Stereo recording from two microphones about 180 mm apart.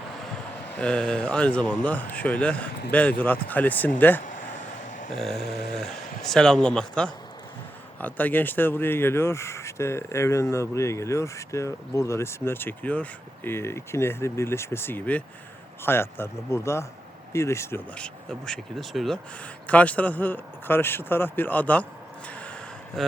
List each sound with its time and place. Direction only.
0.8 s speech: 5° left (ahead or behind)
5.2 s speech: centre (ahead or behind)
5.5 s a sound: 65° left (ahead or behind)
6.2 s speech: centre (ahead or behind)
22.3 s gasp: 5° left (ahead or behind)
23.0 s speech: centre (ahead or behind)